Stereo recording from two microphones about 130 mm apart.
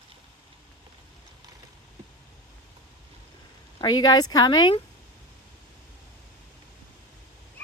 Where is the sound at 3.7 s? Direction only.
30° left (ahead or behind).